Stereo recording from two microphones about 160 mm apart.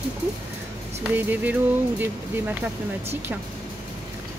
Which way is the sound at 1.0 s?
10° right (ahead or behind).